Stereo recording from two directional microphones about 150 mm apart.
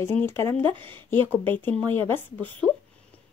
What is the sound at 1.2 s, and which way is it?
Speech, 15° left (ahead or behind).